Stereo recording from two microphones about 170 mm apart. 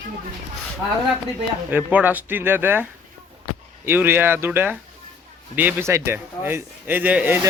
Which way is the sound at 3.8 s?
15° right (ahead or behind).